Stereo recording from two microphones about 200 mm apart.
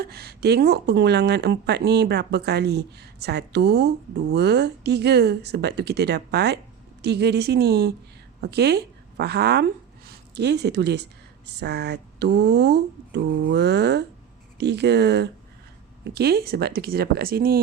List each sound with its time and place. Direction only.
0.0 s a woman's voice: 50° right (ahead or behind)